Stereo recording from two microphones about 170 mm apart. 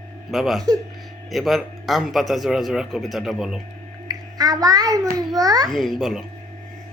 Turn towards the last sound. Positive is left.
turn(degrees=0)  # may be behind; listen again after turning